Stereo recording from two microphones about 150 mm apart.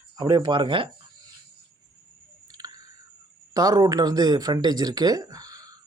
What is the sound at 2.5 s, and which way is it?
Chewing, 25° right (ahead or behind).